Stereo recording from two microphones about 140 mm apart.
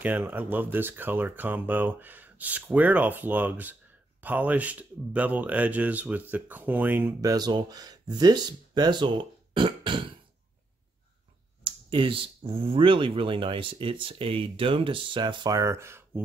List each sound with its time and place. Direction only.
0.0 s speech: 15° right (ahead or behind)
7.2 s speech: 25° right (ahead or behind)
11.6 s speech: 35° right (ahead or behind); by 16.2 s 20° right (ahead or behind)